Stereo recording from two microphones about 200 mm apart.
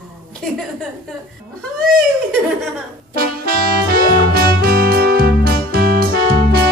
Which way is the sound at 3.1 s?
50° right (ahead or behind).